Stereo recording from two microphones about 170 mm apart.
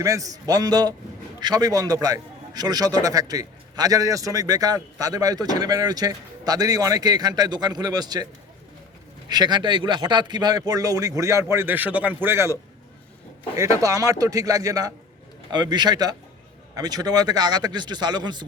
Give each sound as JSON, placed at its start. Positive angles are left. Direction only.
{"t": 0.0, "sound": "a man's voice", "side_deg": -20}
{"t": 9.3, "sound": "a man's voice", "side_deg": -25}
{"t": 13.6, "sound": "a man's voice", "side_deg": -20}